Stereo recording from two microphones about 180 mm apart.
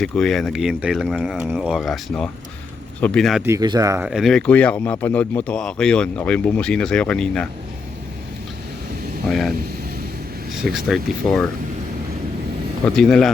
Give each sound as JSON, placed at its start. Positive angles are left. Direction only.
{"t": 0.0, "sound": "speech", "side_deg": 0}
{"t": 3.4, "sound": "speech", "side_deg": -20}
{"t": 4.0, "sound": "speech", "side_deg": 0}
{"t": 9.3, "sound": "speech", "side_deg": 0}
{"t": 10.6, "sound": "speech", "side_deg": 0}
{"t": 12.8, "sound": "speech", "side_deg": 5}